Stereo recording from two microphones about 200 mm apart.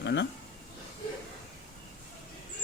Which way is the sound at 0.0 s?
60° left (ahead or behind).